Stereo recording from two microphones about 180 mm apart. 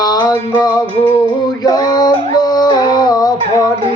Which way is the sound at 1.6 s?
20° left (ahead or behind).